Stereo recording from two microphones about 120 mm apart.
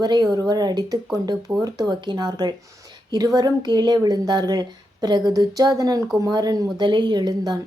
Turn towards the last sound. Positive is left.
turn(degrees=-35)  # may be behind; listen again after turning